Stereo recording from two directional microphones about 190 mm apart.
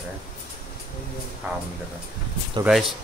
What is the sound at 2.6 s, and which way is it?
Speech, centre (ahead or behind).